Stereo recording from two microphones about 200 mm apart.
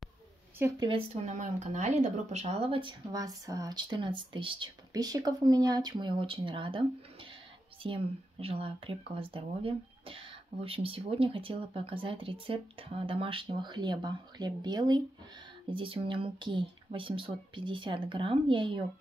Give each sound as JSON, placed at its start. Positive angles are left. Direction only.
{"t": 0.6, "sound": "speech", "side_deg": -25}
{"t": 7.8, "sound": "speech", "side_deg": -25}